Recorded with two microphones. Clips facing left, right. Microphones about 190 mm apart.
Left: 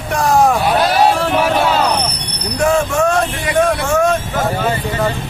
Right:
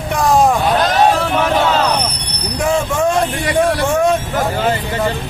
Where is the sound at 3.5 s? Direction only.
15° right (ahead or behind).